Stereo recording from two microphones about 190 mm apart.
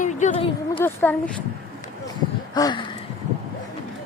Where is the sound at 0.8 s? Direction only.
10° left (ahead or behind).